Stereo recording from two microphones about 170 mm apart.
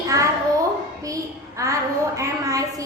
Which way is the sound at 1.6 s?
20° right (ahead or behind).